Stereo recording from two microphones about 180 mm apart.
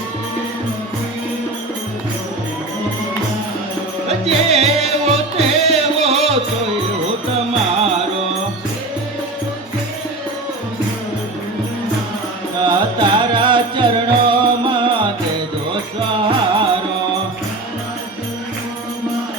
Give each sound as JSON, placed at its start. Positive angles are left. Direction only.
{"t": 4.1, "sound": "music", "side_deg": -35}
{"t": 12.6, "sound": "music", "side_deg": -25}